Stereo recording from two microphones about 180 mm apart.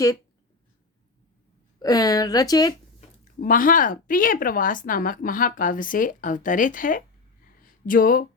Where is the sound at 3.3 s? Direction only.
50° left (ahead or behind).